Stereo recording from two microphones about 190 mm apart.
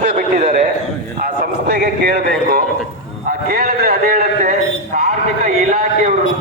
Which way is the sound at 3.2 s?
50° right (ahead or behind).